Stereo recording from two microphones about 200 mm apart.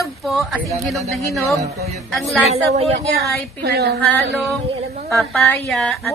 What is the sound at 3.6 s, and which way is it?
Speech, 55° right (ahead or behind).